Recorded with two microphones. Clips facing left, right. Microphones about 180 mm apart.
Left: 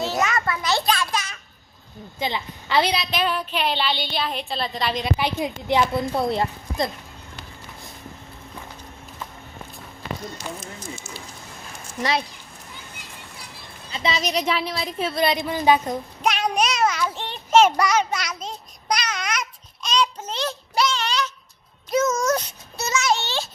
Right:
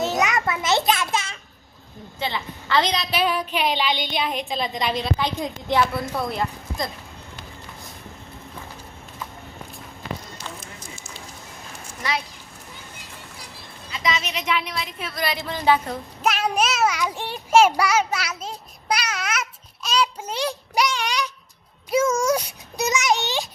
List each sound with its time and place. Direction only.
0.0 s a sound: 20° right (ahead or behind)
2.1 s a woman's voice: 15° left (ahead or behind)
3.1 s a child's voice: 10° right (ahead or behind)
5.1 s a woman's voice: 15° left (ahead or behind)
13.9 s a woman's voice: 30° left (ahead or behind); by 16.0 s 15° left (ahead or behind)
16.2 s a child's voice: 5° right (ahead or behind)